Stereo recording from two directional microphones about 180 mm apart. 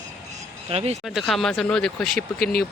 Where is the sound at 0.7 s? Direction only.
35° right (ahead or behind).